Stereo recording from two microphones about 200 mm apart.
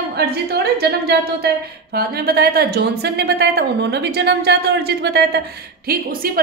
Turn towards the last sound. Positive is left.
turn(degrees=-50)  # may be behind; listen again after turning